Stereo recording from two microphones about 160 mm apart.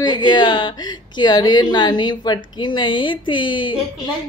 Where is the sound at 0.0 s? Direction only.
25° left (ahead or behind).